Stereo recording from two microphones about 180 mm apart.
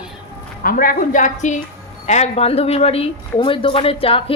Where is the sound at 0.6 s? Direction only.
50° left (ahead or behind).